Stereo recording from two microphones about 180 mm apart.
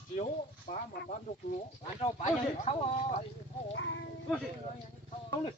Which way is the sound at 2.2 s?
40° left (ahead or behind).